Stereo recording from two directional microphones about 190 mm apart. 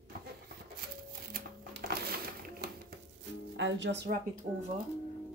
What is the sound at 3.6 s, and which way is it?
Speech, 75° right (ahead or behind).